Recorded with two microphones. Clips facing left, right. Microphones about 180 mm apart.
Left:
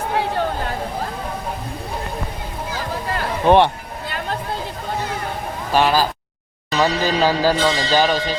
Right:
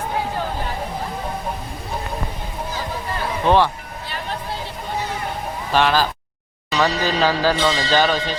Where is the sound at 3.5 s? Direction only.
20° left (ahead or behind).